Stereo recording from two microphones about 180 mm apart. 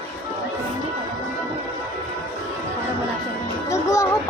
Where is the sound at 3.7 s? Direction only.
15° left (ahead or behind).